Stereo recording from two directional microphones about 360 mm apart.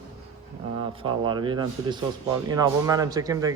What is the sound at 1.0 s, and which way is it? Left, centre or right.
Speech, centre.